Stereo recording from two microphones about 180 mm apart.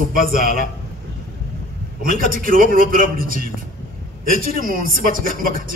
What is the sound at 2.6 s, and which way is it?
Speech, 50° right (ahead or behind).